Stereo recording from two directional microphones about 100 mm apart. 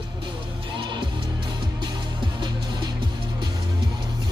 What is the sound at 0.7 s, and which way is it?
Music, 50° right (ahead or behind).